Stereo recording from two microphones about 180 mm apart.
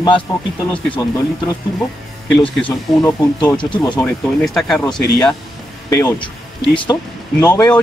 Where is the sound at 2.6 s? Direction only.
25° left (ahead or behind).